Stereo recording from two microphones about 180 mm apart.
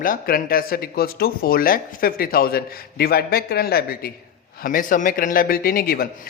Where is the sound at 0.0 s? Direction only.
50° left (ahead or behind).